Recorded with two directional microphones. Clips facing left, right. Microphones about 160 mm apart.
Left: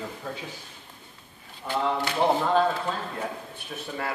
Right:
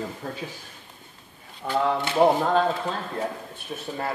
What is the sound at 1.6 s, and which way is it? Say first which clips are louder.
Speech: right 3 dB; 65° right (ahead or behind).